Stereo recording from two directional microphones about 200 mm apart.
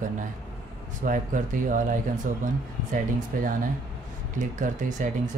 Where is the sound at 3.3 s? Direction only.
45° right (ahead or behind).